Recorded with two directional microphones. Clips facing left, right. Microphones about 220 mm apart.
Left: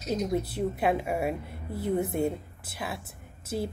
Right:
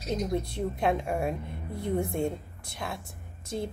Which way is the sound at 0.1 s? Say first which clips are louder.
Left 1 dB; 5° left (ahead or behind).